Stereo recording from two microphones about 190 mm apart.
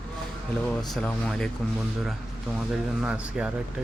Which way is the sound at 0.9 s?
5° left (ahead or behind).